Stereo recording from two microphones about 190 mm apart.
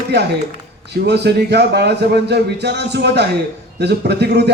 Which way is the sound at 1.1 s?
60° right (ahead or behind).